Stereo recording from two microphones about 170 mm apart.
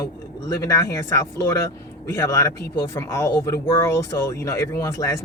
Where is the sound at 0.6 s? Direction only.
15° left (ahead or behind).